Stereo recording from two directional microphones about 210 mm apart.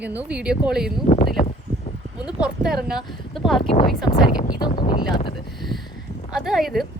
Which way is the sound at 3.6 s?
25° left (ahead or behind).